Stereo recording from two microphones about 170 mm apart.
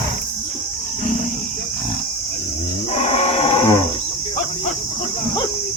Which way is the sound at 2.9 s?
40° left (ahead or behind).